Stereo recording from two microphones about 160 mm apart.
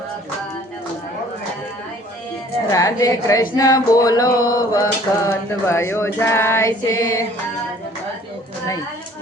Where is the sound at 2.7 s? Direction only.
20° left (ahead or behind).